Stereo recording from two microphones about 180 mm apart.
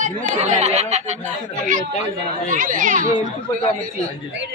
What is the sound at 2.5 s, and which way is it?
Speech, 45° right (ahead or behind).